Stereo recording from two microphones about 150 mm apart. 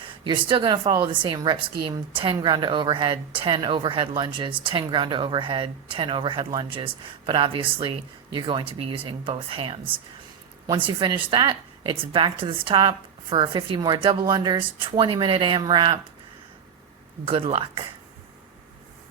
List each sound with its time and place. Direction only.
0.1 s a woman's voice: 35° right (ahead or behind)
17.2 s a woman's voice: 40° right (ahead or behind)